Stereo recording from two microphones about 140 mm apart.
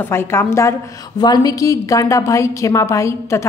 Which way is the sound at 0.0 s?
15° left (ahead or behind).